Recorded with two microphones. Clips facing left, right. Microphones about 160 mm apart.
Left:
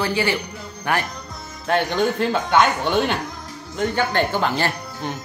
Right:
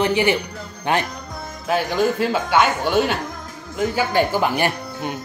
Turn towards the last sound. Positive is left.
turn(degrees=-15)  # may be behind; listen again after turning